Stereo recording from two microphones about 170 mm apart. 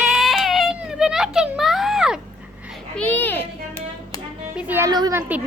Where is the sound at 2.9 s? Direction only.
10° left (ahead or behind).